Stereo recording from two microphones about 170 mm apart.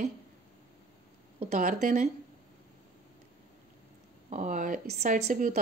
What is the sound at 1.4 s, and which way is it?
Speech, 55° right (ahead or behind).